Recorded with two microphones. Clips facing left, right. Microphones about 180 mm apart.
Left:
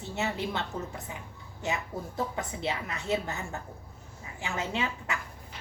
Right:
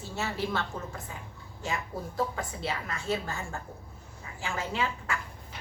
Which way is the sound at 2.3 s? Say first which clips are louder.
Left 1 dB; 20° left (ahead or behind).